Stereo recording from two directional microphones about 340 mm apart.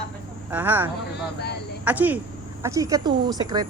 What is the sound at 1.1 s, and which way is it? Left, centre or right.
Speech, left.